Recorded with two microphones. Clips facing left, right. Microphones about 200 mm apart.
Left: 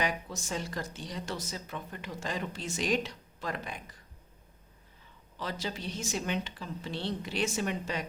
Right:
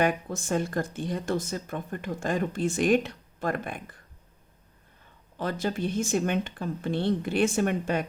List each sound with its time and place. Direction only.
0.0 s speech: 50° right (ahead or behind)
5.4 s speech: 50° right (ahead or behind)